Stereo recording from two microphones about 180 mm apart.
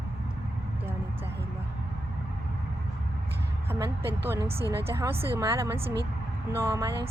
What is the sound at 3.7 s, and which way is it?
A woman's voice, 15° right (ahead or behind).